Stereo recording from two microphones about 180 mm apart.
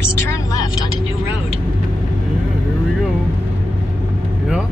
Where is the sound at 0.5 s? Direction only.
20° left (ahead or behind).